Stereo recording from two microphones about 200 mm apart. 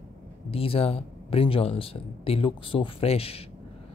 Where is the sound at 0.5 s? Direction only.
30° left (ahead or behind).